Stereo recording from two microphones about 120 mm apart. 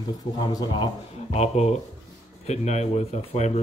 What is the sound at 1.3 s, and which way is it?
Speech, 65° left (ahead or behind).